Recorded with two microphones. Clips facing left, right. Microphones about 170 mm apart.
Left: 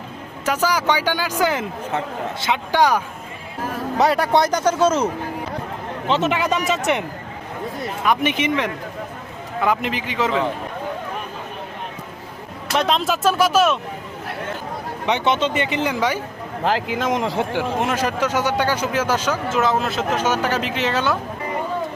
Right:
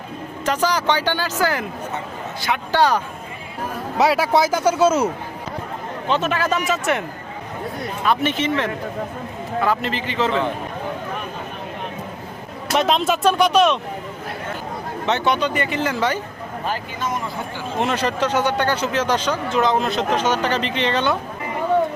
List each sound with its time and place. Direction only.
0.4 s speech: 10° left (ahead or behind)
3.9 s speech: centre (ahead or behind)
6.1 s speech: 20° left (ahead or behind)
8.0 s speech: 15° left (ahead or behind)
12.7 s speech: centre (ahead or behind)
15.0 s speech: 15° left (ahead or behind)
16.6 s speech: 90° left
17.7 s speech: 10° left (ahead or behind)